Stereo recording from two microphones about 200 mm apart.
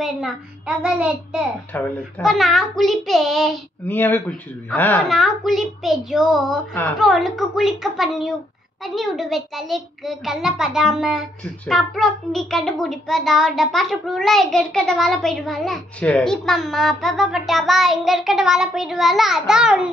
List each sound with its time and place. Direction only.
0.0 s a child's voice: centre (ahead or behind)
1.7 s a child's voice: 10° left (ahead or behind)